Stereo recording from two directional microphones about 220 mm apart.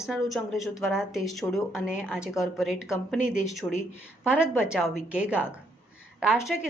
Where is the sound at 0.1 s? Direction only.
Centre (ahead or behind).